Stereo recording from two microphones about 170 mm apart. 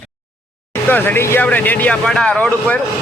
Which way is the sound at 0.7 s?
10° left (ahead or behind).